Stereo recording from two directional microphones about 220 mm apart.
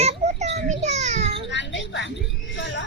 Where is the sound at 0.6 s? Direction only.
30° right (ahead or behind).